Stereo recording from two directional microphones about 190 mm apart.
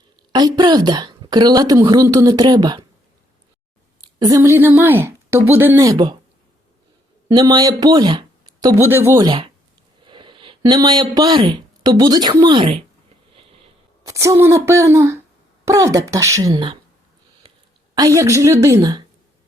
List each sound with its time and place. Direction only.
0.3 s a woman's voice: 20° right (ahead or behind)
4.0 s a woman's voice: 20° right (ahead or behind)
7.3 s a woman's voice: 20° right (ahead or behind)
8.6 s a woman's voice: 10° right (ahead or behind)
13.3 s sniff: 30° right (ahead or behind)
14.1 s a woman's voice: 15° right (ahead or behind)
17.9 s a woman's voice: 20° right (ahead or behind)